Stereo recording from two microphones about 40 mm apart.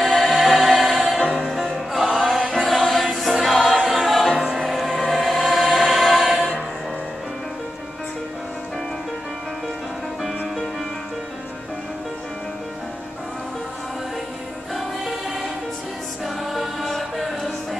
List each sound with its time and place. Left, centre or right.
0.0 s music: centre
2.1 s chant: centre
3.2 s choir: centre
4.4 s music: centre
4.6 s choir: centre
5.7 s music: centre
14.7 s choir: centre
16.8 s music: centre